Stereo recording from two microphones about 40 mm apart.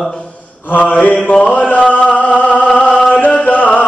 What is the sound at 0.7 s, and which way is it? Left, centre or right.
Mantra, left.